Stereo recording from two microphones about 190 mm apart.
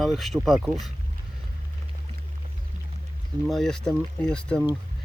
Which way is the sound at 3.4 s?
Centre (ahead or behind).